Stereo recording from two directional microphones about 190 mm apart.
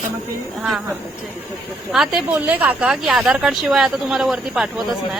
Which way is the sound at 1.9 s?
Centre (ahead or behind).